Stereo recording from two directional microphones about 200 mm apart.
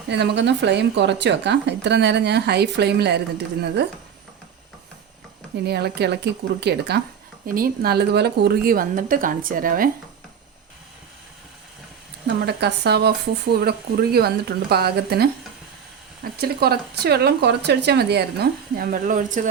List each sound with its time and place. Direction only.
0.1 s speech: 60° right (ahead or behind)
5.6 s speech: 55° right (ahead or behind)
12.5 s speech: 55° right (ahead or behind)
16.4 s speech: 50° right (ahead or behind)